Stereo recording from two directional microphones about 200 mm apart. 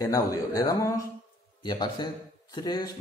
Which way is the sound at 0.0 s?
15° left (ahead or behind).